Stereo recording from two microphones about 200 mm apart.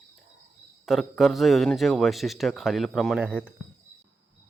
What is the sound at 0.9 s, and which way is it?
A man's voice, centre (ahead or behind).